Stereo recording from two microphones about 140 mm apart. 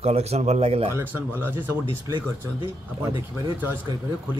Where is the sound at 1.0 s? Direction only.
15° right (ahead or behind).